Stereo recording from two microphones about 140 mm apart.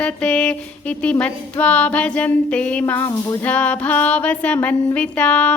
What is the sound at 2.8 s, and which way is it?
Speech, 20° left (ahead or behind).